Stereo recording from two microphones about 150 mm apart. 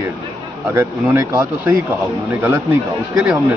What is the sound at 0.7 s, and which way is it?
Speech, 15° right (ahead or behind).